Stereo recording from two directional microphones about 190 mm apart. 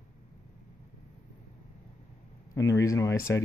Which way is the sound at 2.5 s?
15° left (ahead or behind).